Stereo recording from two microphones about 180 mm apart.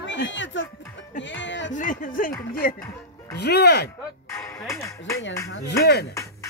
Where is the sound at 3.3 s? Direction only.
65° left (ahead or behind).